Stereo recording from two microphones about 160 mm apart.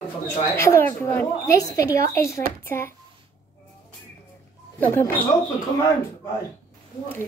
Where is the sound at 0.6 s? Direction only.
15° left (ahead or behind).